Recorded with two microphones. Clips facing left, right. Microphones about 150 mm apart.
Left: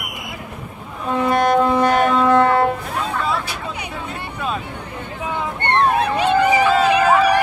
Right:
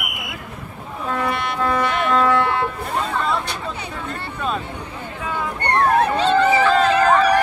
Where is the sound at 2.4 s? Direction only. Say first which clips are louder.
Left 6 dB; 40° left (ahead or behind).